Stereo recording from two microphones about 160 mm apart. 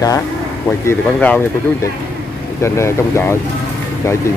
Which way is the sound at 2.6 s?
15° left (ahead or behind).